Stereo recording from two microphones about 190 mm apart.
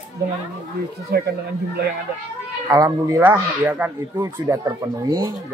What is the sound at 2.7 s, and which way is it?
Speech, 20° right (ahead or behind).